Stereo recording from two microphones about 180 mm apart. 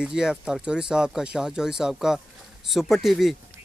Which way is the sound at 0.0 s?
5° right (ahead or behind).